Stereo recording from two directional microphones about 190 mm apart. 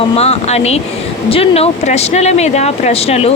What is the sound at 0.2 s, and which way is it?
A woman's voice, 35° left (ahead or behind).